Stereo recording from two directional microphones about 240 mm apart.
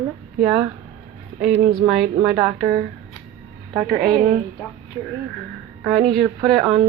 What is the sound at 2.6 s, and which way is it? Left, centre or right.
Speech, right.